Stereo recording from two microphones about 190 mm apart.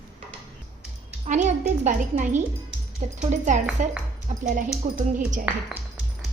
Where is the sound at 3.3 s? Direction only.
40° right (ahead or behind).